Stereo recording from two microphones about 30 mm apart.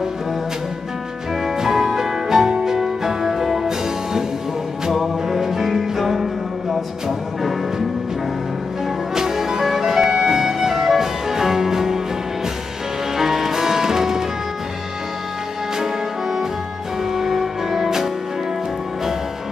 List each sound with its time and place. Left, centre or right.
1.6 s music: centre
9.1 s music: centre
13.2 s music: centre
17.1 s music: centre